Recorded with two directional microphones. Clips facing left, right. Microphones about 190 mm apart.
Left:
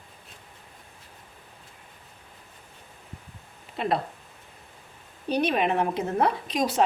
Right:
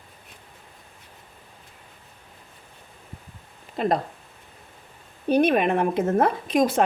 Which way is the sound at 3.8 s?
40° right (ahead or behind).